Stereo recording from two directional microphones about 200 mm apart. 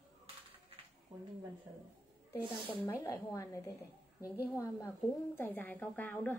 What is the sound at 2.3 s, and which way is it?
A woman's voice, 10° left (ahead or behind).